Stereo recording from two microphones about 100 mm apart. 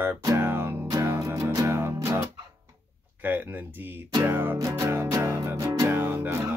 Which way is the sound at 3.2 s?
20° right (ahead or behind).